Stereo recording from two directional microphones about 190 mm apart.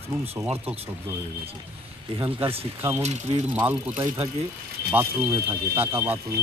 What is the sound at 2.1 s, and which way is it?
Speech, 30° right (ahead or behind).